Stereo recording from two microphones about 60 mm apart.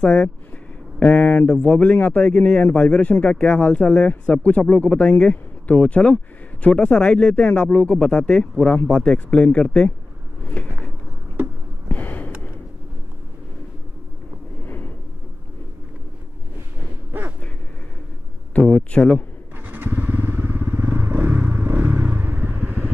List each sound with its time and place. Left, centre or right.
0.0 s speech: centre
11.9 s a sound: left
17.1 s gasp: right
18.5 s speech: centre
19.6 s motorcycle: right
22.1 s vehicle: right